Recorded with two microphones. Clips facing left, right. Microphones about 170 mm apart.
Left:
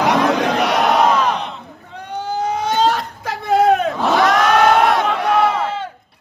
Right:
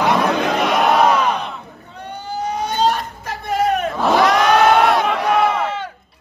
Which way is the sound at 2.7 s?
85° left.